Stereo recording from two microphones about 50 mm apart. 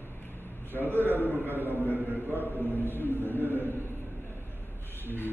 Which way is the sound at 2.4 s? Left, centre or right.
Left.